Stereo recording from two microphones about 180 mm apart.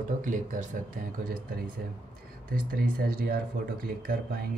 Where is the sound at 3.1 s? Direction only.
55° right (ahead or behind).